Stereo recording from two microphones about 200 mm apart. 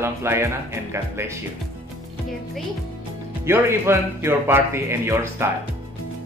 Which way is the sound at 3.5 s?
10° right (ahead or behind).